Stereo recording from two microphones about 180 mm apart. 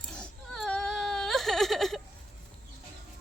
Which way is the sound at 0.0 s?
5° left (ahead or behind).